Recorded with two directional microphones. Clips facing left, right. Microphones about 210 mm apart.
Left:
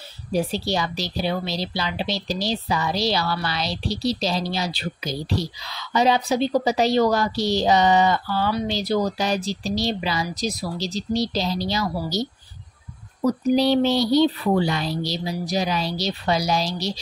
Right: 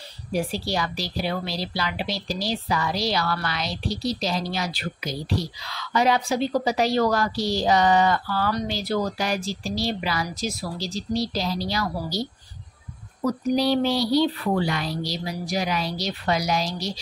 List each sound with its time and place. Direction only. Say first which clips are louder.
0.3 s a woman's voice: left 3 dB; 25° left (ahead or behind)